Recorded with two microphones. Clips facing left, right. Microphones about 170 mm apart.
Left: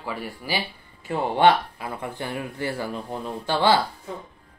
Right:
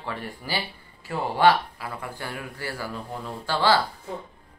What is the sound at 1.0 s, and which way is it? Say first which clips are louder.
Speech: left 2 dB; 20° left (ahead or behind).